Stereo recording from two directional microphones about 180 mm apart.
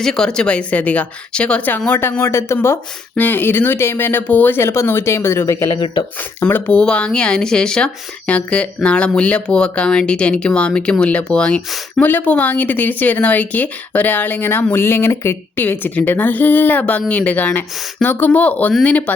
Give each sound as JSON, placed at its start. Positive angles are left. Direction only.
{"t": 0.0, "sound": "speech", "side_deg": 5}
{"t": 5.7, "sound": "speech", "side_deg": 25}
{"t": 6.4, "sound": "speech", "side_deg": 5}